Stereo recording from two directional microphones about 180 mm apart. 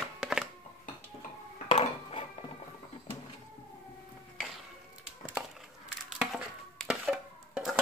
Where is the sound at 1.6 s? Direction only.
30° left (ahead or behind).